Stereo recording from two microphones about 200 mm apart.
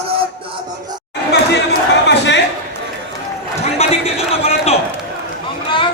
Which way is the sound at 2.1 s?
60° left (ahead or behind).